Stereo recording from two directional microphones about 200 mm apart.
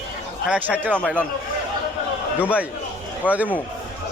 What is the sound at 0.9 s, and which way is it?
Speech, 5° left (ahead or behind).